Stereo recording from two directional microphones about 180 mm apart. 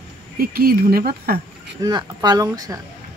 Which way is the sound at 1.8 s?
20° right (ahead or behind).